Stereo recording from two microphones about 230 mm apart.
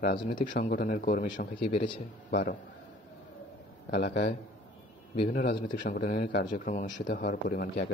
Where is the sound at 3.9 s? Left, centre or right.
Left.